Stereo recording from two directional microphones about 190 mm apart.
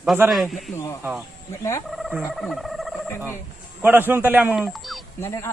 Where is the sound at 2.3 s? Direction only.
Centre (ahead or behind).